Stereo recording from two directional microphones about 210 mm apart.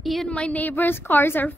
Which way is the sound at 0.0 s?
Centre (ahead or behind).